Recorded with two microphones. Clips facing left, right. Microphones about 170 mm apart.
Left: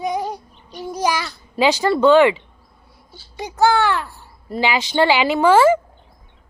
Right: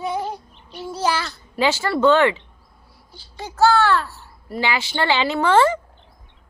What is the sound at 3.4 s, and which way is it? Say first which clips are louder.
Speech: even; 15° left (ahead or behind).